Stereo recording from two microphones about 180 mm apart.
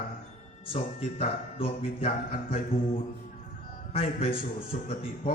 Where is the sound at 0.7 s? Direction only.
35° left (ahead or behind).